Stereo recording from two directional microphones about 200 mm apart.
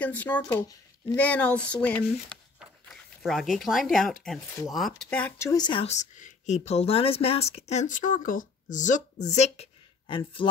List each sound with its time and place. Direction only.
0.0 s speech: 5° left (ahead or behind); by 10.5 s 25° left (ahead or behind)